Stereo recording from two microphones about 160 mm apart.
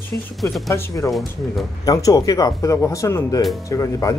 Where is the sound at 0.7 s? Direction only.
20° left (ahead or behind).